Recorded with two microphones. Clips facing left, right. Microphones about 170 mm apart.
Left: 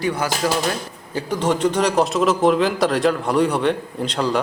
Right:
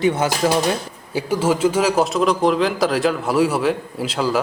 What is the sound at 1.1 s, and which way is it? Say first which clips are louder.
A man's voice: right 2 dB; 5° right (ahead or behind).